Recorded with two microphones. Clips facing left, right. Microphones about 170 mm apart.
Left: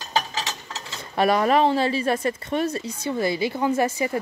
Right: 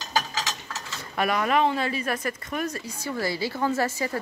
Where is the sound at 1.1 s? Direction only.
35° left (ahead or behind).